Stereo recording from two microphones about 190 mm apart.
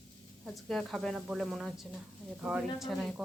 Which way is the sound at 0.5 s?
Centre (ahead or behind).